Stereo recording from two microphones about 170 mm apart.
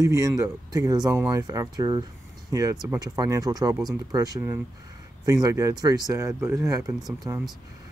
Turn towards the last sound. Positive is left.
turn(degrees=-20)  # may be behind; listen again after turning